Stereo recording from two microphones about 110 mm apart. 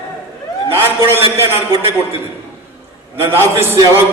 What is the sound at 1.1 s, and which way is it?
Speech, 25° right (ahead or behind).